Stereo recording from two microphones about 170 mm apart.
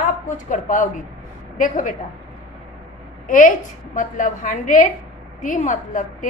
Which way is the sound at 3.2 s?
50° left (ahead or behind).